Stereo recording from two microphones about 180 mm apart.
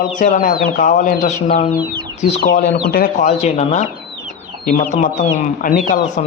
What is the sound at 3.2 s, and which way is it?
Speech, 35° left (ahead or behind).